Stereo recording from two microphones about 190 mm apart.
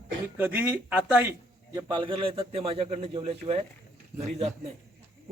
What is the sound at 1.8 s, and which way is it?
A man's voice, 25° right (ahead or behind).